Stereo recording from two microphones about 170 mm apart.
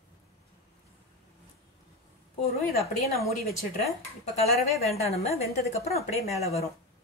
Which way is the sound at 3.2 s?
Centre (ahead or behind).